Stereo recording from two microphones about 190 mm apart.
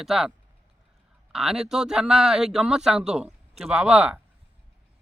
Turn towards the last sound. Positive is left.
turn(degrees=-5)  # may be behind; listen again after turning